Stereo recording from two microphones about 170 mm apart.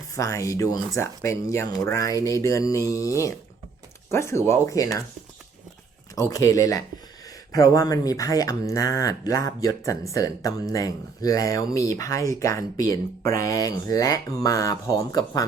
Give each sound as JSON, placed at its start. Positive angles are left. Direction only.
{"t": 0.1, "sound": "speech", "side_deg": 20}
{"t": 6.1, "sound": "speech", "side_deg": 20}